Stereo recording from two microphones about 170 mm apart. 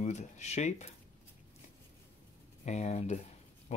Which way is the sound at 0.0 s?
40° left (ahead or behind).